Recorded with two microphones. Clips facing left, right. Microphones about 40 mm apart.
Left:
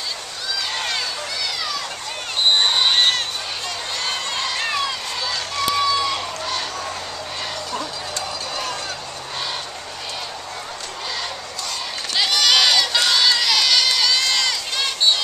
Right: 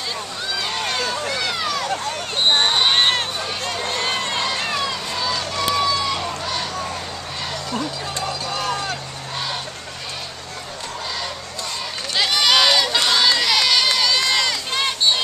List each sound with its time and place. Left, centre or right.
0.7 s run: centre
1.0 s run: right
2.6 s a sound: centre
3.2 s run: centre
4.5 s run: centre
7.7 s a sound: centre
12.2 s crowd: centre